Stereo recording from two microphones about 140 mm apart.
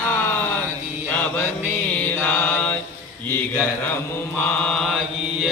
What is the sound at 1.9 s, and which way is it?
Mantra, 10° left (ahead or behind).